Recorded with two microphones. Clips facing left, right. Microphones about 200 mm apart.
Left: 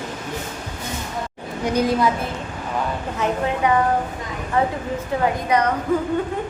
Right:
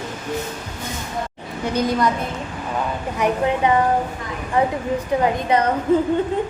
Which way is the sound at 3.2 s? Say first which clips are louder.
Right 3 dB; 20° right (ahead or behind).